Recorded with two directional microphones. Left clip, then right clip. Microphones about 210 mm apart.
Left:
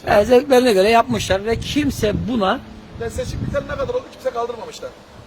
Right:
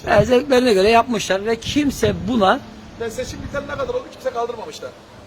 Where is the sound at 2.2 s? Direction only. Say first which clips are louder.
Right 6 dB; 15° right (ahead or behind).